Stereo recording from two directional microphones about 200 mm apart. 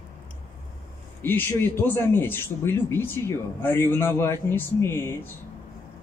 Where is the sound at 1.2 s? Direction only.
10° left (ahead or behind).